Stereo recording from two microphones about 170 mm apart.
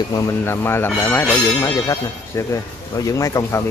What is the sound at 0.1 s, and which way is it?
Speech, 15° left (ahead or behind).